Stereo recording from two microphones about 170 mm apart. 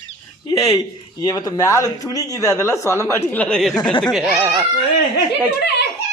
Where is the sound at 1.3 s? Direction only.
20° left (ahead or behind); by 4.4 s centre (ahead or behind).